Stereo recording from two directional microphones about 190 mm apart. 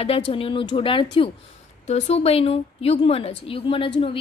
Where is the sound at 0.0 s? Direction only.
30° left (ahead or behind).